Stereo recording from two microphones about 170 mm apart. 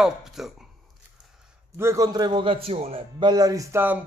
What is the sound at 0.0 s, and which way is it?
Speech, centre (ahead or behind).